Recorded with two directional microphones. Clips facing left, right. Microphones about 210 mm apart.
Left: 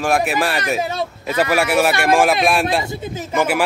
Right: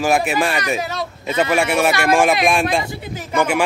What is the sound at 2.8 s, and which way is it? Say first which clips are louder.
Speech: left 3 dB; 25° left (ahead or behind).